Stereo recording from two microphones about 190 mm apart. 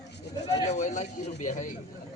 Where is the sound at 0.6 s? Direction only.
35° left (ahead or behind).